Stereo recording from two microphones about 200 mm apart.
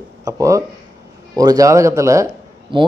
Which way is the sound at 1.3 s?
20° right (ahead or behind).